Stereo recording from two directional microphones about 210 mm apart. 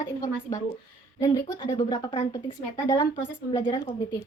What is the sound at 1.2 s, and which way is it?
A woman's voice, 15° left (ahead or behind).